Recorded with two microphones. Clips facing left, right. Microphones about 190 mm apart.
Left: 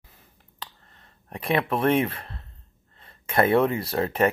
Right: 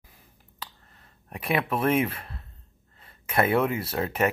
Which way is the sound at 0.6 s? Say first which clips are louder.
Left 1 dB; 5° right (ahead or behind).